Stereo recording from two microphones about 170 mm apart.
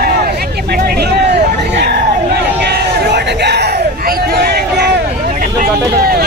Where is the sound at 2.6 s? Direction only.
75° right (ahead or behind).